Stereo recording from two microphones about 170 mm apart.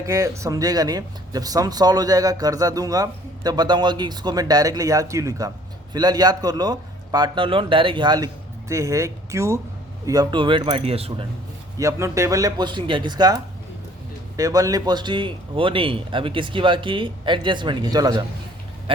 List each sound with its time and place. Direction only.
0.0 s speech: 20° right (ahead or behind); by 11.3 s 35° right (ahead or behind)
11.8 s speech: 20° right (ahead or behind)
18.9 s duck: 30° right (ahead or behind)